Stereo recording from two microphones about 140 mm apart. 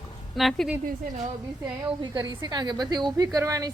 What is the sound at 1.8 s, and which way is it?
A woman's voice, 30° right (ahead or behind).